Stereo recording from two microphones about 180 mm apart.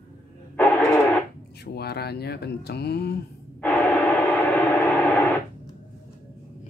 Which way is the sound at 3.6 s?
5° left (ahead or behind).